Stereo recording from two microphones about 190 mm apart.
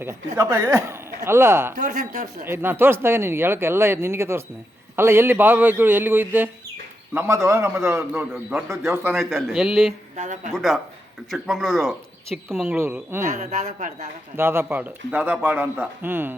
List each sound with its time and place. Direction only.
0.3 s a man's voice: 15° right (ahead or behind)
1.8 s a man's voice: 40° right (ahead or behind)
2.5 s a man's voice: 10° right (ahead or behind)
9.1 s speech: centre (ahead or behind)
10.2 s a man's voice: 40° right (ahead or behind)
10.5 s a man's voice: centre (ahead or behind)
13.2 s a man's voice: 40° right (ahead or behind)
14.3 s a man's voice: 10° right (ahead or behind)